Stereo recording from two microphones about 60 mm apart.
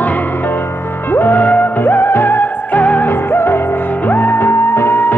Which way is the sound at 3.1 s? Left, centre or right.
Left.